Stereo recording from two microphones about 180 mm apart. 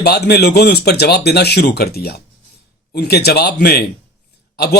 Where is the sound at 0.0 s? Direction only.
60° left (ahead or behind).